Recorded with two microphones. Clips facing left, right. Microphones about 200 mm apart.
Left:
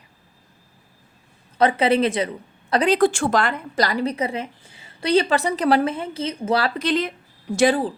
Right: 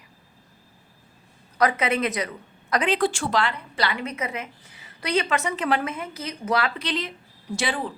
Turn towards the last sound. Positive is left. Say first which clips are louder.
# left 9 dB
turn(degrees=40)  # may be behind; listen again after turning